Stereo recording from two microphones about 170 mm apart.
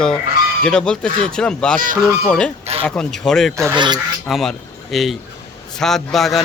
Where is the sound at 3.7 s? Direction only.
25° right (ahead or behind).